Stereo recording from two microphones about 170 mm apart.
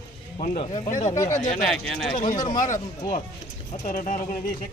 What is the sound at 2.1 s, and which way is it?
Speech, 45° left (ahead or behind).